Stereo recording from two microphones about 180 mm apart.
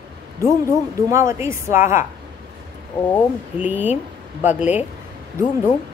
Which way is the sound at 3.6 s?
10° right (ahead or behind).